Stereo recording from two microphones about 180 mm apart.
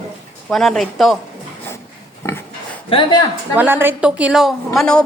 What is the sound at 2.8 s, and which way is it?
Speech, 30° left (ahead or behind).